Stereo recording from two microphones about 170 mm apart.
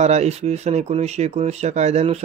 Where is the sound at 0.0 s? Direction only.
40° right (ahead or behind).